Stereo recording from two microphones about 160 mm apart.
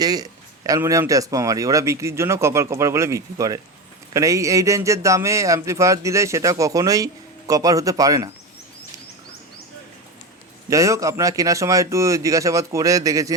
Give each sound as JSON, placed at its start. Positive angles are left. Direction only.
{"t": 0.0, "sound": "a man's voice", "side_deg": -25}
{"t": 10.7, "sound": "a man's voice", "side_deg": -20}